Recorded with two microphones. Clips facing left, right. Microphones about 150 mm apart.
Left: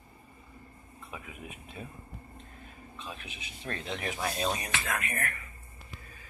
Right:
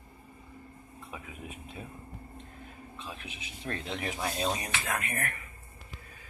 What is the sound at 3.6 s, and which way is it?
Speech, 25° right (ahead or behind).